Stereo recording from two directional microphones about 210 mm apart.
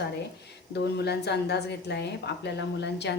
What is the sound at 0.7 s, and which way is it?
A woman's voice, 50° left (ahead or behind).